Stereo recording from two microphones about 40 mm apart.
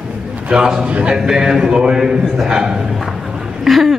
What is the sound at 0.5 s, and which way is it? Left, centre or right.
Speech, centre.